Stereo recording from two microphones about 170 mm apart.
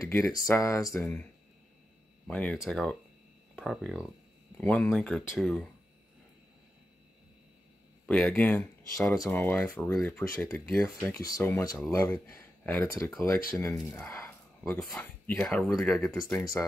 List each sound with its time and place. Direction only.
0.0 s speech: 20° left (ahead or behind)
2.2 s speech: 10° left (ahead or behind)
4.6 s speech: 10° left (ahead or behind)
8.1 s speech: 5° left (ahead or behind)
14.7 s speech: centre (ahead or behind)
16.3 s speech: 20° left (ahead or behind)